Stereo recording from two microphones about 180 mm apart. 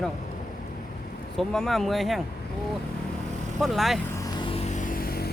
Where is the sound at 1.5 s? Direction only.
Centre (ahead or behind).